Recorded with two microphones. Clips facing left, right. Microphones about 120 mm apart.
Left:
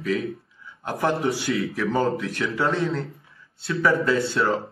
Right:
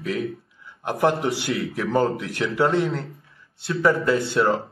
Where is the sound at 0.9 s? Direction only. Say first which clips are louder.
Right 2 dB; 20° right (ahead or behind).